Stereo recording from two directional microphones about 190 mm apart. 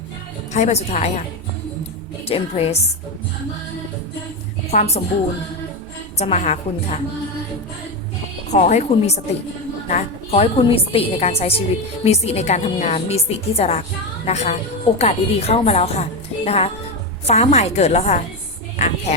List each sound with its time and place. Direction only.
0.5 s a woman's voice: 35° left (ahead or behind)
2.2 s a woman's voice: 30° left (ahead or behind)
4.7 s a woman's voice: 40° left (ahead or behind)
6.1 s a woman's voice: 35° left (ahead or behind)
8.4 s a woman's voice: 40° left (ahead or behind)